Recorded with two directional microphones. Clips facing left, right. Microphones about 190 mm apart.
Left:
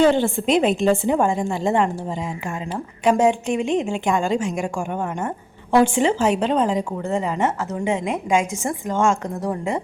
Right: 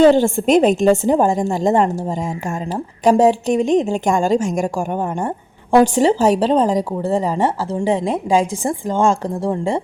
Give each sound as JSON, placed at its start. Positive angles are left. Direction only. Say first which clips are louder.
{"t": 0.0, "sound": "a woman's voice", "louder": "right 5 dB", "side_deg": -40}